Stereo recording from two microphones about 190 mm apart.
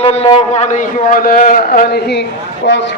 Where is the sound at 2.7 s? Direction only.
70° left (ahead or behind).